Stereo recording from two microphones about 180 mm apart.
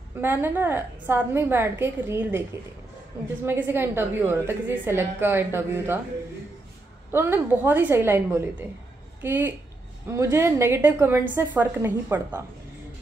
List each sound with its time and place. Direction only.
0.2 s a woman's voice: 10° right (ahead or behind)
3.4 s a woman's voice: 10° right (ahead or behind)
7.1 s a woman's voice: 10° right (ahead or behind)